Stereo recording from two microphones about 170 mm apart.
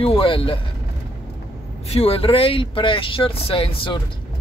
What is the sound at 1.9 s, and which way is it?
Speech, 35° left (ahead or behind).